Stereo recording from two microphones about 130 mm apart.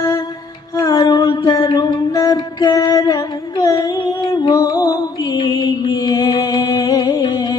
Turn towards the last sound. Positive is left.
turn(degrees=30)  # may be behind; listen again after turning